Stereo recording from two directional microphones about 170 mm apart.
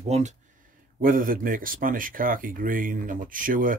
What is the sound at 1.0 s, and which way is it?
Speech, 55° right (ahead or behind).